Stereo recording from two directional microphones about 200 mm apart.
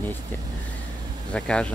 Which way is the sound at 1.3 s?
5° left (ahead or behind).